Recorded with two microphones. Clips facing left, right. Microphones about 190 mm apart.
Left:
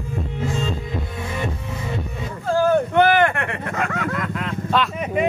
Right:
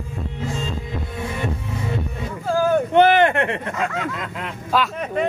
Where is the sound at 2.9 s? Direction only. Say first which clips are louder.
Right 2 dB; 20° right (ahead or behind).